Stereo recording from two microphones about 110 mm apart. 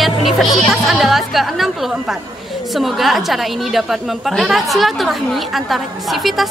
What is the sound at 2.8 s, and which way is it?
Speech, centre (ahead or behind).